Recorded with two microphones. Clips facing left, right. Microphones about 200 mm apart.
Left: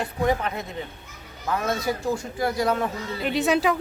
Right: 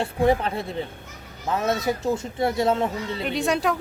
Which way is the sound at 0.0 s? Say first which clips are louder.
Right 3 dB; 30° right (ahead or behind).